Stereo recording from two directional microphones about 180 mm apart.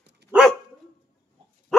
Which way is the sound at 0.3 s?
5° right (ahead or behind).